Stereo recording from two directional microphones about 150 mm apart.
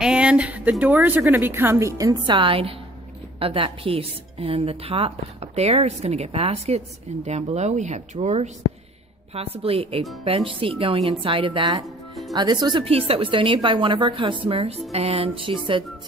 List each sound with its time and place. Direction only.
0.0 s a woman's voice: 5° right (ahead or behind); by 11.8 s 35° right (ahead or behind)
11.8 s music: centre (ahead or behind)
12.4 s a woman's voice: 30° right (ahead or behind)